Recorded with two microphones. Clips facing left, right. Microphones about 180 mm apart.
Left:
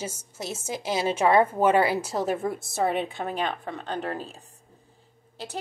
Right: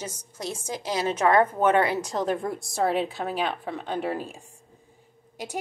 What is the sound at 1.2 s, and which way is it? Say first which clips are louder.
A woman's voice: even; 10° left (ahead or behind).